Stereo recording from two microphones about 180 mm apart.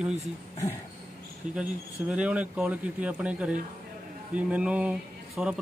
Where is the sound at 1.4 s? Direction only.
45° right (ahead or behind).